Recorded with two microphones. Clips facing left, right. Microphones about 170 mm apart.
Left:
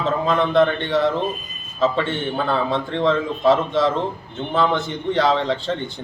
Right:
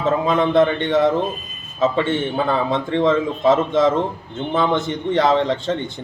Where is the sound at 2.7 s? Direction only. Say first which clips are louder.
Right 4 dB; 20° right (ahead or behind).